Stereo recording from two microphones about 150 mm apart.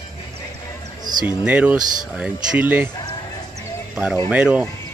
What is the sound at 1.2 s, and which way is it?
Speech, 10° right (ahead or behind).